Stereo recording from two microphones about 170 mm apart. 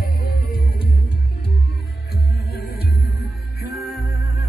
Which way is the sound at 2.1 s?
65° left (ahead or behind).